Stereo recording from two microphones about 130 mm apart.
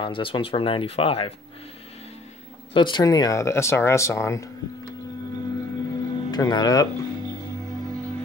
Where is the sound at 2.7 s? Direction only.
35° left (ahead or behind).